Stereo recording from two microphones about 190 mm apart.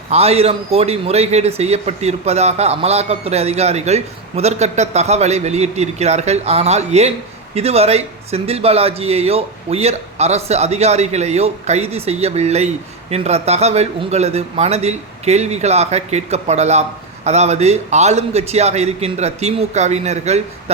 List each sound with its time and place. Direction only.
0.1 s speech: 30° right (ahead or behind)